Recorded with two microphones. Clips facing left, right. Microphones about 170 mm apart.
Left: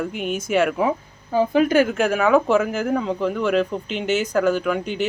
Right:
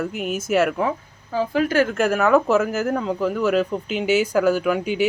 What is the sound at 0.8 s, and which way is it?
A woman's voice, 20° left (ahead or behind).